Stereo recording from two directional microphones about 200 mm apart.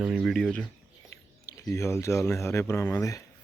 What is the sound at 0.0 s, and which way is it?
Speech, 5° right (ahead or behind).